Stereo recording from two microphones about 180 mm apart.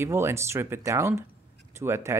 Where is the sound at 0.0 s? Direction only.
15° right (ahead or behind).